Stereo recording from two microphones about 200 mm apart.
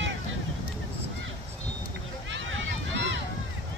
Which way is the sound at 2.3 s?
70° right (ahead or behind).